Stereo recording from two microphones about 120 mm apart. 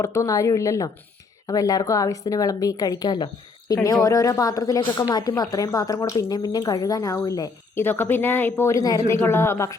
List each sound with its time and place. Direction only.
0.0 s a woman's voice: 25° left (ahead or behind)
7.8 s a woman's voice: 15° left (ahead or behind)